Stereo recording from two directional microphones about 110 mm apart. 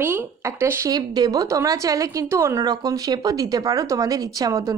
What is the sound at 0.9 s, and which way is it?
Speech, 35° right (ahead or behind).